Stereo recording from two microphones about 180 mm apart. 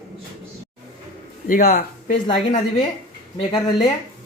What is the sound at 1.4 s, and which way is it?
Speech, 50° left (ahead or behind).